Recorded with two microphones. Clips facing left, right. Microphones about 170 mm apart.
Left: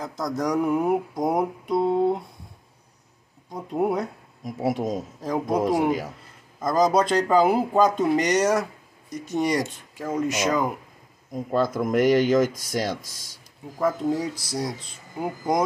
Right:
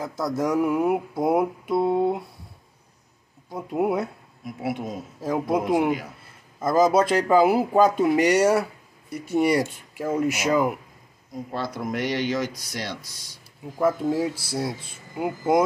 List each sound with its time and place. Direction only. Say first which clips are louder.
0.0 s mantra: right 1 dB; 5° right (ahead or behind)
3.5 s mantra: even; 5° right (ahead or behind)
4.5 s speech: left 4 dB; 40° left (ahead or behind)
5.2 s mantra: right 2 dB; 5° right (ahead or behind)
5.6 s speech: left 3 dB; 40° left (ahead or behind)
6.6 s speech: right 1 dB; 5° right (ahead or behind)
11.3 s speech: left 7 dB; 50° left (ahead or behind)
13.7 s speech: right 2 dB; 5° right (ahead or behind)
14.6 s mantra: right 1 dB; 5° right (ahead or behind)